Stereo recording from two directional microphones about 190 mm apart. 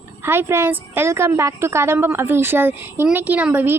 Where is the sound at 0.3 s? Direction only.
10° right (ahead or behind).